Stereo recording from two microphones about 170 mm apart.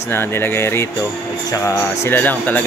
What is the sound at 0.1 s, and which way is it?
Speech, 15° left (ahead or behind).